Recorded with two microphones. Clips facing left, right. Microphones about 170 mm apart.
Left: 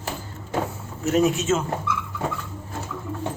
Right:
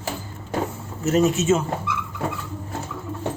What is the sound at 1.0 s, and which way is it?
Speech, centre (ahead or behind).